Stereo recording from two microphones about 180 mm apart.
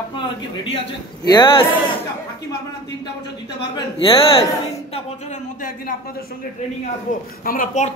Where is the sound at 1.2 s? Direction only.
25° left (ahead or behind).